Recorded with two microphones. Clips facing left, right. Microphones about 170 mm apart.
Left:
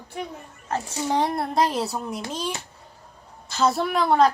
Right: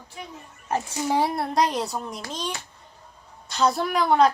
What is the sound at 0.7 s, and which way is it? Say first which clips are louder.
A woman's voice: right 1 dB; 10° right (ahead or behind).